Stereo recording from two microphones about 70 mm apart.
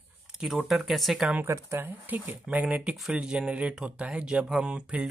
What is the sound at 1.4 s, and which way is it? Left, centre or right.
Speech, right.